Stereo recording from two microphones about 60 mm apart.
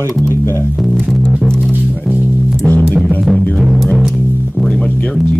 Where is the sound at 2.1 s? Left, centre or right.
Right.